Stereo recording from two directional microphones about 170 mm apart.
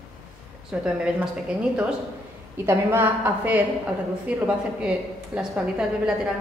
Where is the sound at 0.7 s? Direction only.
5° right (ahead or behind).